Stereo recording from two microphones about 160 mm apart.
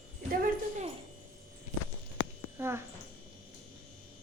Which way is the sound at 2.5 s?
15° right (ahead or behind).